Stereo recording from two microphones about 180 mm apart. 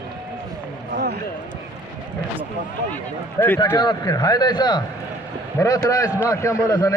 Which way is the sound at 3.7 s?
20° left (ahead or behind).